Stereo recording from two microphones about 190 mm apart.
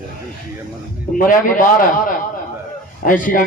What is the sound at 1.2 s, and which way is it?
Speech, 45° left (ahead or behind).